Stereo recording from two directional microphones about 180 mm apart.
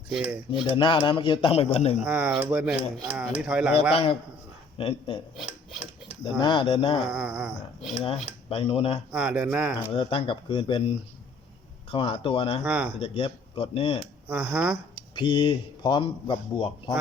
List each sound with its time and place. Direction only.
0.1 s cutlery: 5° right (ahead or behind)
0.8 s a man's voice: 25° left (ahead or behind)
2.0 s cutlery: 5° right (ahead or behind)
3.9 s speech: 30° left (ahead or behind)
6.4 s a man's voice: 30° left (ahead or behind)
7.1 s speech: 5° right (ahead or behind)
8.0 s speech: 30° left (ahead or behind)
9.1 s speech: 5° right (ahead or behind)
9.9 s a man's voice: 30° left (ahead or behind)
12.6 s cutlery: 5° right (ahead or behind)
13.0 s speech: 30° left (ahead or behind)
14.3 s cutlery: 10° right (ahead or behind)
15.1 s a man's voice: 25° left (ahead or behind)